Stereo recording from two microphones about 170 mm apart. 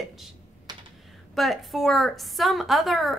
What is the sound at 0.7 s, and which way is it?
Computer keyboard, 25° right (ahead or behind).